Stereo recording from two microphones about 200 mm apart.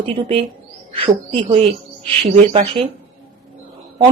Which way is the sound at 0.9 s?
25° right (ahead or behind).